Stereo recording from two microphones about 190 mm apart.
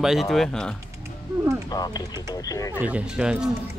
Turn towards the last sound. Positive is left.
turn(degrees=-5)  # may be behind; listen again after turning